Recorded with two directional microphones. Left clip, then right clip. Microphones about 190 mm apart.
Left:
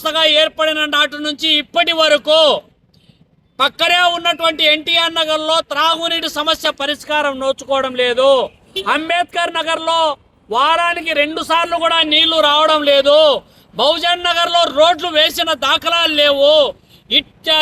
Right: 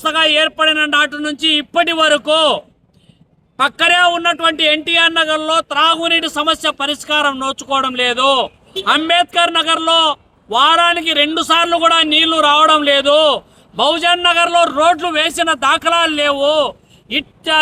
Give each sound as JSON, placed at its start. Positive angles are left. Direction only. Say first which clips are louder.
{"t": 0.2, "sound": "speech", "louder": "left 1 dB", "side_deg": -10}
{"t": 3.6, "sound": "speech", "louder": "right 1 dB", "side_deg": -10}
{"t": 5.9, "sound": "a man's voice", "louder": "right 3 dB", "side_deg": -30}
{"t": 6.3, "sound": "speech", "louder": "right 1 dB", "side_deg": -10}